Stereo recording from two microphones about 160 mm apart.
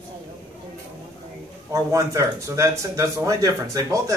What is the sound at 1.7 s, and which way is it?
Speech, 20° right (ahead or behind).